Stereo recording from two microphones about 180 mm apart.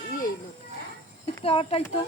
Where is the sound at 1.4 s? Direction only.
30° left (ahead or behind).